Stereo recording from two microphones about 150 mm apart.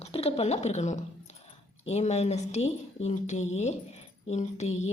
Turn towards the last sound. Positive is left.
turn(degrees=50)  # may be behind; listen again after turning